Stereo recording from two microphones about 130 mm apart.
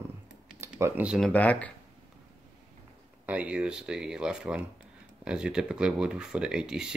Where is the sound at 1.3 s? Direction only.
10° left (ahead or behind).